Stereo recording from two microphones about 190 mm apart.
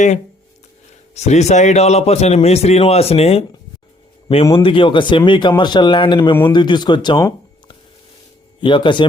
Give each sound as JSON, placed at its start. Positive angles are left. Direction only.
{"t": 1.1, "sound": "a man's voice", "side_deg": 35}
{"t": 4.5, "sound": "speech", "side_deg": 25}
{"t": 8.6, "sound": "speech", "side_deg": 25}